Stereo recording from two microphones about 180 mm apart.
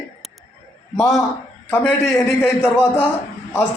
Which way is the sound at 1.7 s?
15° left (ahead or behind).